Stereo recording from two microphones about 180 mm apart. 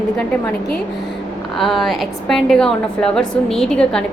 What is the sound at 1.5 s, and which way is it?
A woman's voice, centre (ahead or behind).